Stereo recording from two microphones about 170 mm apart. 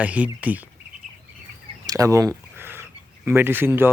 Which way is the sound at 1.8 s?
20° right (ahead or behind).